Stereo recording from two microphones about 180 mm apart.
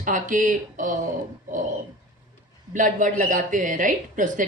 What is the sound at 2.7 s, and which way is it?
Speech, 45° right (ahead or behind).